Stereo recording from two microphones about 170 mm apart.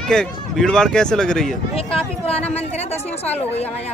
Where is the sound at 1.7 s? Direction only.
35° left (ahead or behind).